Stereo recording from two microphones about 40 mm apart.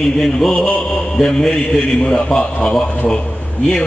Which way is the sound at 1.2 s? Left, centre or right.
Centre.